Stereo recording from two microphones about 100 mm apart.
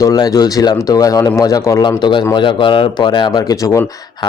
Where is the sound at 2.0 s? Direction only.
50° left (ahead or behind).